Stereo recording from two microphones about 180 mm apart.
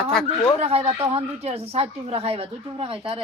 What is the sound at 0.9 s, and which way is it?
Speech, 15° right (ahead or behind).